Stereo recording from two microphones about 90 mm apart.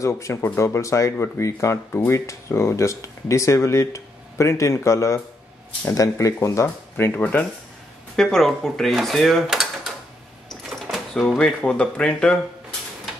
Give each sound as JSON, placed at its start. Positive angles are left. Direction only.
{"t": 0.0, "sound": "speech", "side_deg": 35}
{"t": 7.2, "sound": "speech", "side_deg": 15}
{"t": 8.2, "sound": "speech", "side_deg": 5}
{"t": 10.7, "sound": "door", "side_deg": 5}
{"t": 11.6, "sound": "speech", "side_deg": 15}